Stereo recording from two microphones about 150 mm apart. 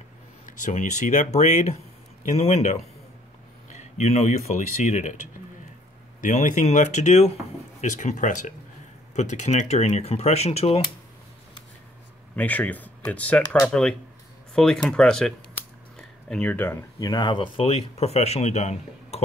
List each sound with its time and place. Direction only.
0.5 s speech: 60° left (ahead or behind)
6.2 s speech: 60° left (ahead or behind); by 10.9 s 40° left (ahead or behind)
12.4 s speech: 10° left (ahead or behind)
17.1 s speech: 30° left (ahead or behind); by 19.2 s 45° left (ahead or behind)